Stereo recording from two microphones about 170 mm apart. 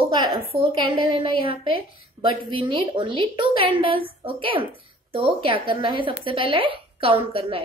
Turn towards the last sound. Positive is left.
turn(degrees=-35)  # may be behind; listen again after turning